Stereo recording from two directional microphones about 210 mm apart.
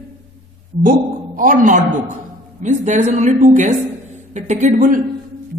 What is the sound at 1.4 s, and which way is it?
A woman's voice, 40° right (ahead or behind).